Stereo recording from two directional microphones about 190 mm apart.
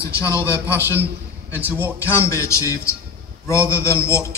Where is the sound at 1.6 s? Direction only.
10° right (ahead or behind).